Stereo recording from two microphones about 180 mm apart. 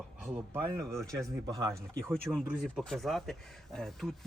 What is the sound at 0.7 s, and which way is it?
Speech, 15° right (ahead or behind).